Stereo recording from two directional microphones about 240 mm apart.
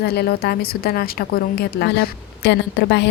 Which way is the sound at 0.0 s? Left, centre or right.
Left.